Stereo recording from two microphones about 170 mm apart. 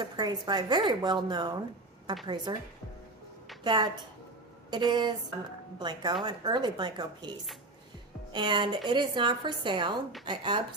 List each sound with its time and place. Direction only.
0.0 s a woman's voice: 25° right (ahead or behind)
3.6 s a woman's voice: 25° right (ahead or behind)